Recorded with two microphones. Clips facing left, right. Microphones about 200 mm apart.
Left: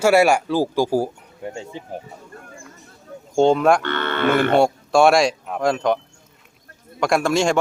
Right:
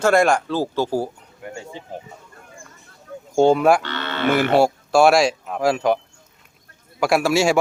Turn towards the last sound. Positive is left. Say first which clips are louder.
# right 1 dB
turn(degrees=-5)  # may be behind; listen again after turning